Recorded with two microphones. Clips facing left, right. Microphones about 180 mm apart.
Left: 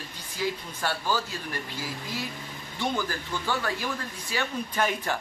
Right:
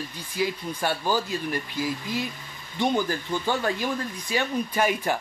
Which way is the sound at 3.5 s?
20° right (ahead or behind).